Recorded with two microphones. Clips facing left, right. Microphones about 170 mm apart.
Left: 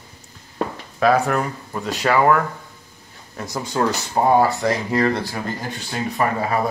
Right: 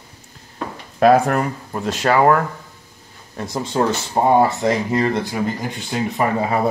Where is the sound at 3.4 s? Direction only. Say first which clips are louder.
Right 2 dB; 25° right (ahead or behind).